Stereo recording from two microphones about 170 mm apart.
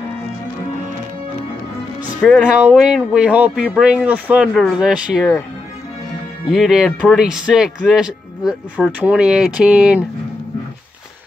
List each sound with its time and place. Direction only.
2.2 s speech: centre (ahead or behind)
6.5 s speech: centre (ahead or behind)